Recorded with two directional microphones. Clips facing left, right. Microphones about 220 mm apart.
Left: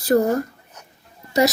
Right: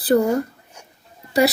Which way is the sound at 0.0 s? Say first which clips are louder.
Right 1 dB; 35° right (ahead or behind).